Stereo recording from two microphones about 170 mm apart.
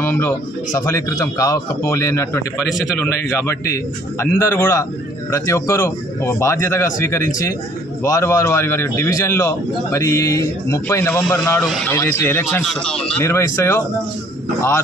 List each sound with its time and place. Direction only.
0.0 s a sound: 10° left (ahead or behind)
0.7 s a man's voice: 15° left (ahead or behind)
11.9 s a man's voice: 15° left (ahead or behind)